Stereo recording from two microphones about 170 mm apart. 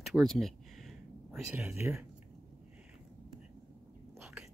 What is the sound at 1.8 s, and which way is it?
Speech, 10° right (ahead or behind).